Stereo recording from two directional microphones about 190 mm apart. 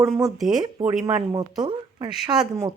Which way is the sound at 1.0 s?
15° right (ahead or behind).